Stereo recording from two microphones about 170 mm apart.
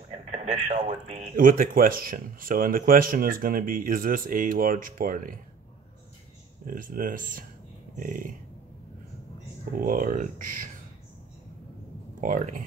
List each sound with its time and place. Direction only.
0.3 s speech: 40° right (ahead or behind)
6.6 s speech: 55° right (ahead or behind)
9.7 s speech: 55° right (ahead or behind)
12.2 s speech: 50° right (ahead or behind)